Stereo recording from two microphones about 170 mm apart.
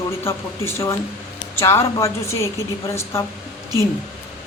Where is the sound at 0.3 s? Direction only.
15° left (ahead or behind).